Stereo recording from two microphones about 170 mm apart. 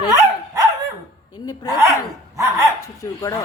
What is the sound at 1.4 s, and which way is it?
Speech, 20° left (ahead or behind).